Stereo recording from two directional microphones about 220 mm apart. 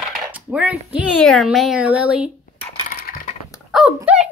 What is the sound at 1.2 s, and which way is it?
Speech, centre (ahead or behind).